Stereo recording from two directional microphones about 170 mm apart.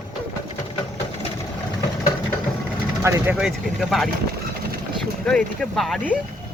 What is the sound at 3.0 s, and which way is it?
Speech, 15° right (ahead or behind).